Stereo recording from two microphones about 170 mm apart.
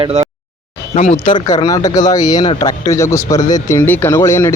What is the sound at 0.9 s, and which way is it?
Speech, 40° left (ahead or behind).